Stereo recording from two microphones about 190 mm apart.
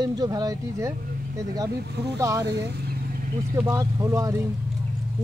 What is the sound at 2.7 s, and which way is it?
Vehicle, 60° right (ahead or behind).